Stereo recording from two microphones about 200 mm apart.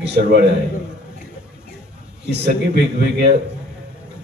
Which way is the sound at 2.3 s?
55° right (ahead or behind).